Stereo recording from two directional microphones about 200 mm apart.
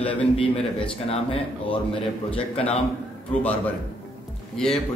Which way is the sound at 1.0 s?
30° left (ahead or behind).